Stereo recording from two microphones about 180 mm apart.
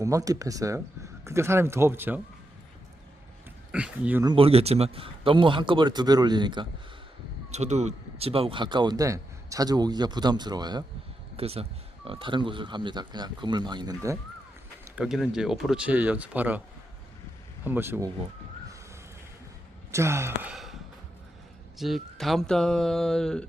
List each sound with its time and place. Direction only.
0.0 s speech: 20° right (ahead or behind)
3.7 s speech: 5° right (ahead or behind)
4.2 s speech: 30° right (ahead or behind)
7.5 s speech: 40° right (ahead or behind); by 10.8 s 25° right (ahead or behind)
11.3 s speech: 35° right (ahead or behind)
14.9 s speech: 5° right (ahead or behind)
17.6 s speech: 10° right (ahead or behind)
19.9 s speech: 15° right (ahead or behind)
21.8 s speech: centre (ahead or behind)